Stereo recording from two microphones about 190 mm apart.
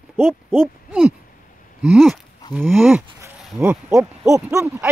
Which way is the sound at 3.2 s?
15° right (ahead or behind).